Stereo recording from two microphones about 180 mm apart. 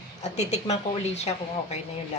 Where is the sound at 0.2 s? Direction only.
40° left (ahead or behind).